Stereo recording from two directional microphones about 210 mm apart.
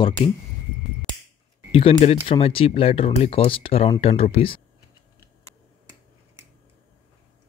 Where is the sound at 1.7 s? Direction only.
25° left (ahead or behind).